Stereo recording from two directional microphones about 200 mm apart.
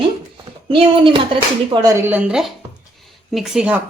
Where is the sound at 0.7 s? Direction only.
25° right (ahead or behind).